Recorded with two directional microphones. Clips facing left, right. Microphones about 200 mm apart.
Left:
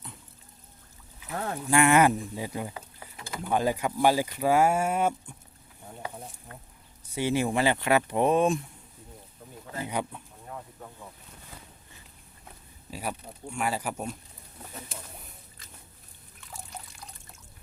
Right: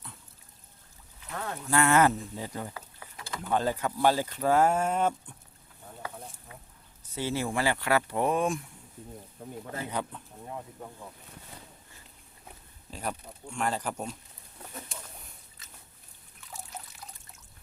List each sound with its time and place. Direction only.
1.3 s a sound: 30° left (ahead or behind)
1.6 s speech: 15° left (ahead or behind)
6.5 s speech: 5° right (ahead or behind)
7.1 s speech: 15° left (ahead or behind)
9.4 s speech: 55° right (ahead or behind)
9.9 s speech: 15° left (ahead or behind)
12.9 s speech: 10° left (ahead or behind)
16.5 s trickle: centre (ahead or behind)